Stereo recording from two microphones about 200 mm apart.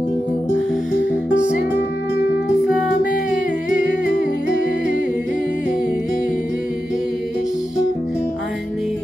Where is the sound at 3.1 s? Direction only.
40° left (ahead or behind).